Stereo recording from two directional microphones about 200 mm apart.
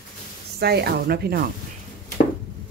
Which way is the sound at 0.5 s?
55° right (ahead or behind).